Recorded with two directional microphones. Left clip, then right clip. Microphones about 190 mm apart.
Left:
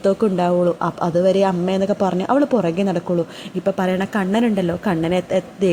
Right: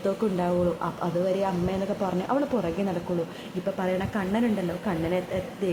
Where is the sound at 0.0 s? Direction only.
40° left (ahead or behind).